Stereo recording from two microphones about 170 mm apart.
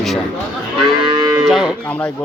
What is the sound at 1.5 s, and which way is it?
Moo, centre (ahead or behind).